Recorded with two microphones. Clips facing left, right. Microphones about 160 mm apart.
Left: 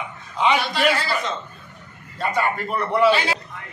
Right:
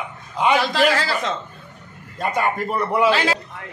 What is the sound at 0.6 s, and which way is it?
Speech, 90° right.